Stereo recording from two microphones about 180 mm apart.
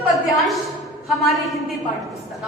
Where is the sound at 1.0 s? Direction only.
Centre (ahead or behind).